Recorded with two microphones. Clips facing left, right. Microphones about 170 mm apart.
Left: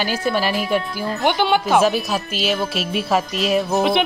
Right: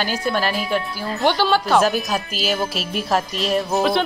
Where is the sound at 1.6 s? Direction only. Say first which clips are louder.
Left 1 dB; 5° left (ahead or behind).